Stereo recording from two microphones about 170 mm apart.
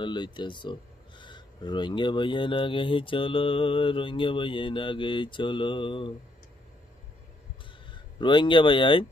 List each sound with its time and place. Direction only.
0.0 s speech: 25° left (ahead or behind)
7.9 s speech: 30° left (ahead or behind)